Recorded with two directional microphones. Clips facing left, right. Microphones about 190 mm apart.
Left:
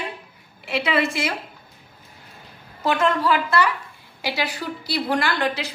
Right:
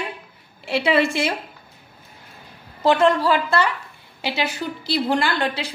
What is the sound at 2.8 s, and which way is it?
A woman's voice, 30° right (ahead or behind).